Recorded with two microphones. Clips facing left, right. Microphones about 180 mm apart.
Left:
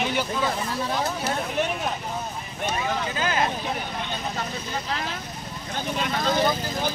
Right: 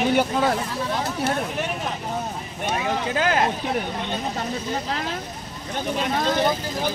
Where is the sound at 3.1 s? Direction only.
65° right (ahead or behind).